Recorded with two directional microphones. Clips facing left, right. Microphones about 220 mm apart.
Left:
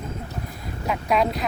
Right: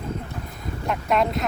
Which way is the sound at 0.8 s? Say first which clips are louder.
Even; centre (ahead or behind).